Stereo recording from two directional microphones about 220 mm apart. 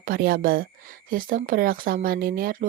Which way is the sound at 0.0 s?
40° right (ahead or behind).